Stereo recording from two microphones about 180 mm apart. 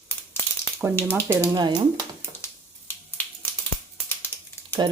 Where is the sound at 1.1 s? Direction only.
15° right (ahead or behind).